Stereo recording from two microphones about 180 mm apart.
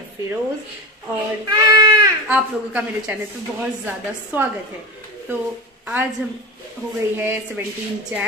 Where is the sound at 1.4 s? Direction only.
20° right (ahead or behind).